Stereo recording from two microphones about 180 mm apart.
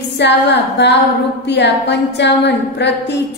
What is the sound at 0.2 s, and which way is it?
A woman's voice, 75° left (ahead or behind).